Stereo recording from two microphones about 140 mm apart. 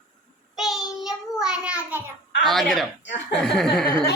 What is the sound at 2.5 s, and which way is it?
A woman's voice, centre (ahead or behind).